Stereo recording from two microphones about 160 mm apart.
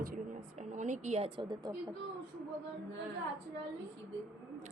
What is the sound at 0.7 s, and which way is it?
Speech, 50° right (ahead or behind).